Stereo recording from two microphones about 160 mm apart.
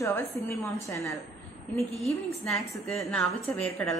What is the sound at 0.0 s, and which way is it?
A woman's voice, 15° left (ahead or behind).